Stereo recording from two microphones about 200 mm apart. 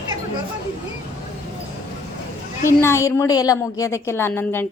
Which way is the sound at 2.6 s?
15° left (ahead or behind).